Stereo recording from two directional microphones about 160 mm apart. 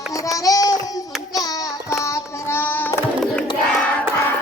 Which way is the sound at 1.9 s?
20° left (ahead or behind).